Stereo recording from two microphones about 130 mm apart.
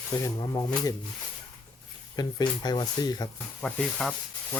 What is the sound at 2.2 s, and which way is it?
Speech, 30° left (ahead or behind).